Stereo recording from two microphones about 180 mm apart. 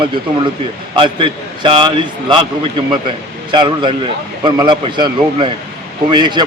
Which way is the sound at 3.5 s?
25° right (ahead or behind).